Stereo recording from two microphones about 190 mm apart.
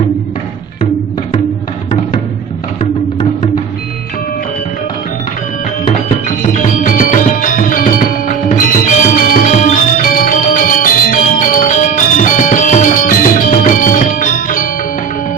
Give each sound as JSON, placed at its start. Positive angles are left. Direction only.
{"t": 6.2, "sound": "music", "side_deg": 45}